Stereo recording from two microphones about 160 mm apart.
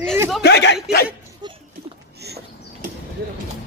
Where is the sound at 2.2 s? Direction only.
90° right.